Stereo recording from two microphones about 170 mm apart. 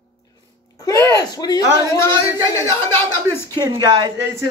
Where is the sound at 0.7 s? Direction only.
20° left (ahead or behind).